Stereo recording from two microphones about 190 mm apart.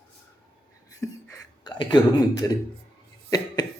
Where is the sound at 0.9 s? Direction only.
20° left (ahead or behind).